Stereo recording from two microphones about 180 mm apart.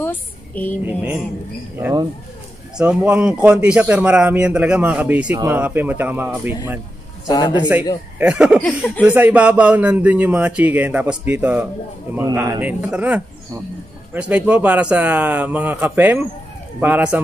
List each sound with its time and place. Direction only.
0.0 s a sound: 10° left (ahead or behind)
0.8 s speech: 5° right (ahead or behind)
2.8 s speech: 5° right (ahead or behind)
7.2 s a man's voice: 25° left (ahead or behind)
8.2 s speech: 5° right (ahead or behind)
8.6 s speech: 10° left (ahead or behind)
9.0 s speech: 10° right (ahead or behind)